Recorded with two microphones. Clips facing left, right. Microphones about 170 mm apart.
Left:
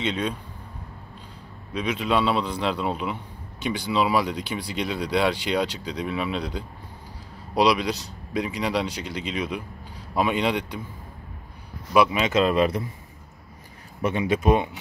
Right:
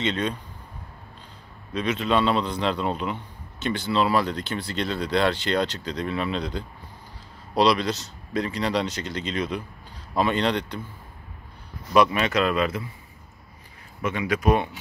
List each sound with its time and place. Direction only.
0.0 s speech: 5° left (ahead or behind)
1.7 s speech: 10° left (ahead or behind)
11.9 s speech: 10° left (ahead or behind)
12.3 s speech: 25° left (ahead or behind)
14.0 s speech: 30° left (ahead or behind)